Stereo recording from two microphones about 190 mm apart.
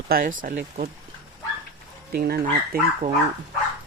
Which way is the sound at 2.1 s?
55° right (ahead or behind).